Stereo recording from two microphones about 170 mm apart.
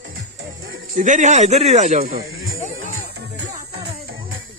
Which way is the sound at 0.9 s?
45° right (ahead or behind).